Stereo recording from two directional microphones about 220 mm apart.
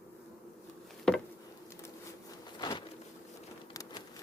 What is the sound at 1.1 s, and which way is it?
Insect, centre (ahead or behind).